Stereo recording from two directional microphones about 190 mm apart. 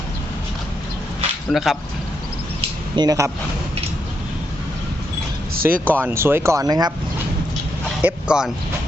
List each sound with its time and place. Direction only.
1.5 s speech: centre (ahead or behind)
2.9 s speech: 20° right (ahead or behind)
5.6 s speech: 10° right (ahead or behind)
8.0 s speech: 5° right (ahead or behind)